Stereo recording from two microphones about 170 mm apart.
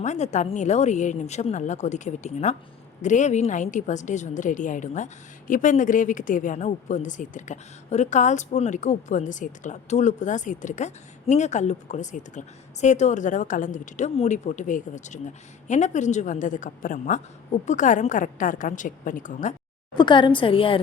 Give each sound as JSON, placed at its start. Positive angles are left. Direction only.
{"t": 0.0, "sound": "a woman's voice", "side_deg": 45}
{"t": 20.0, "sound": "a woman's voice", "side_deg": 30}